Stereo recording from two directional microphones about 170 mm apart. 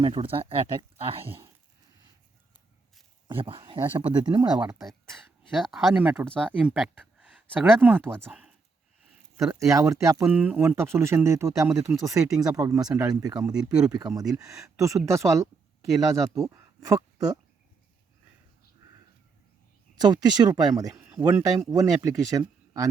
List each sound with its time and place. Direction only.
0.0 s speech: 30° right (ahead or behind)
3.2 s speech: 30° right (ahead or behind)
4.7 s speech: centre (ahead or behind)
9.4 s speech: 20° right (ahead or behind)
16.3 s speech: 20° right (ahead or behind)
20.0 s speech: 25° right (ahead or behind)